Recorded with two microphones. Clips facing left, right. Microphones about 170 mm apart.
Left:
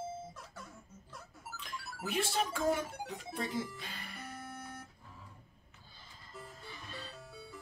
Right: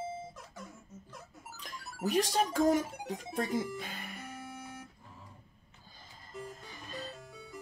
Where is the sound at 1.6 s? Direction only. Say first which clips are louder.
Right 3 dB; 40° right (ahead or behind).